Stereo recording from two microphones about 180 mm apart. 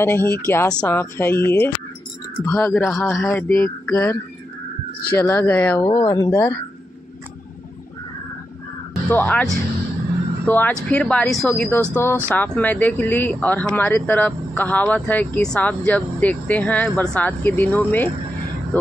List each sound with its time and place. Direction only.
0.0 s speech: 10° left (ahead or behind)
3.2 s speech: 15° left (ahead or behind)
5.2 s speech: 10° left (ahead or behind)
5.9 s speech: 25° left (ahead or behind)
8.9 s speech: 10° left (ahead or behind)